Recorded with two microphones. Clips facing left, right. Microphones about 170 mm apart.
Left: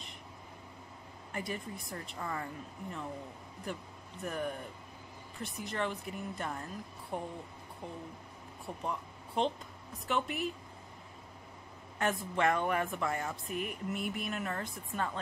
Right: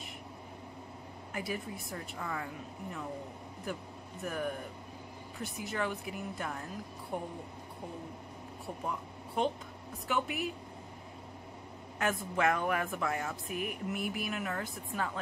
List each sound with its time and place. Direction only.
1.3 s speech: 5° right (ahead or behind)
4.2 s speech: centre (ahead or behind)
8.8 s a sound: 5° right (ahead or behind)
10.0 s speech: centre (ahead or behind)
12.0 s speech: centre (ahead or behind)